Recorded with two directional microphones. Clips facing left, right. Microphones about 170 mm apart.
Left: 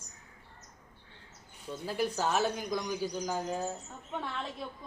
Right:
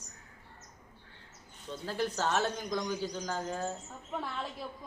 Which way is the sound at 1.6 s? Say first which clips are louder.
Left 1 dB; 10° left (ahead or behind).